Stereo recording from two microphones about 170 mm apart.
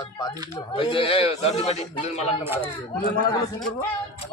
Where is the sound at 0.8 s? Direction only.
30° left (ahead or behind).